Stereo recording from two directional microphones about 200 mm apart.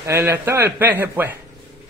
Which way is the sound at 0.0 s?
15° right (ahead or behind).